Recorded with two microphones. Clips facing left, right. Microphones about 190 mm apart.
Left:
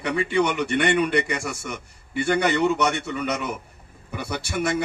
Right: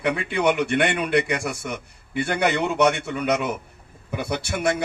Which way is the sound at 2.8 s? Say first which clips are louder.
Right 4 dB; 55° right (ahead or behind).